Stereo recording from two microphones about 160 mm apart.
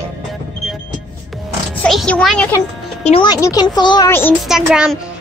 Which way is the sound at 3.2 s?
25° left (ahead or behind).